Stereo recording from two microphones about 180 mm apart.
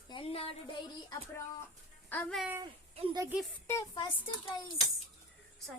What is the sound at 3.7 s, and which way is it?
Speech, 20° left (ahead or behind).